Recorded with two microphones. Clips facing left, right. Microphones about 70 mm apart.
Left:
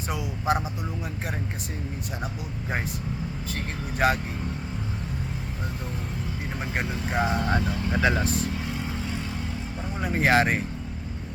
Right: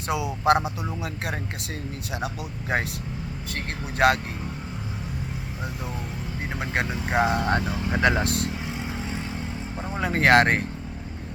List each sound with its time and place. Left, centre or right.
0.1 s speech: right
7.0 s speech: right
7.3 s speech: centre
8.2 s speech: right
10.0 s speech: right